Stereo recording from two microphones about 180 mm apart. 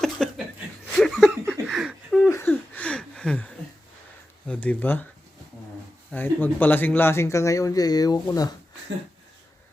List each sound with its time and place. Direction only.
0.0 s chuckle: centre (ahead or behind)
0.9 s laughter: 5° left (ahead or behind)
2.3 s a sound: 10° left (ahead or behind)
4.4 s speech: 5° left (ahead or behind)
6.1 s speech: 10° left (ahead or behind)